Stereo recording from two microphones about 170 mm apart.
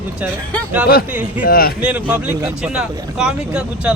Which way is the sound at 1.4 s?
60° left (ahead or behind).